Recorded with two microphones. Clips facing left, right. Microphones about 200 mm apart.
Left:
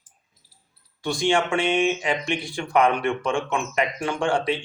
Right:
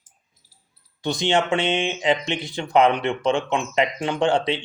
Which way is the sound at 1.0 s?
20° right (ahead or behind).